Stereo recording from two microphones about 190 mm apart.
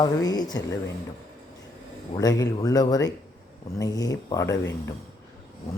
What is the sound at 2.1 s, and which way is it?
Speech, 20° left (ahead or behind).